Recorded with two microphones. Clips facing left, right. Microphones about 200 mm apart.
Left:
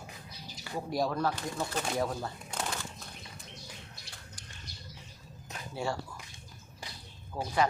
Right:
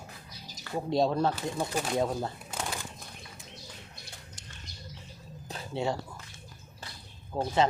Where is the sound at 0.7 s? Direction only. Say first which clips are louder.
Right 5 dB; 25° right (ahead or behind).